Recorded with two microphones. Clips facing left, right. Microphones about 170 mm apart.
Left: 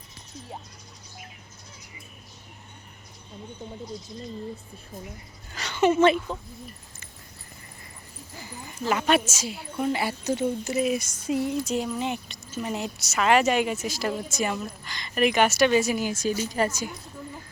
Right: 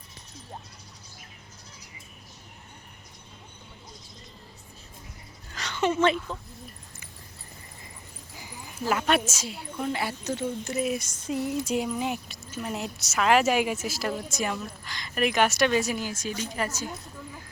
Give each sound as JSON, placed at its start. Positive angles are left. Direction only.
{"t": 5.5, "sound": "speech", "side_deg": 10}
{"t": 8.4, "sound": "a woman's voice", "side_deg": -10}
{"t": 11.6, "sound": "a woman's voice", "side_deg": -10}
{"t": 16.6, "sound": "a woman's voice", "side_deg": 30}